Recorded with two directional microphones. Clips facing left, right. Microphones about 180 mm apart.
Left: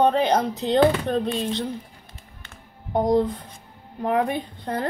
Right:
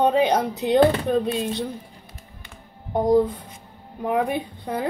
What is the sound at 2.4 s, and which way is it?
Music, 5° right (ahead or behind).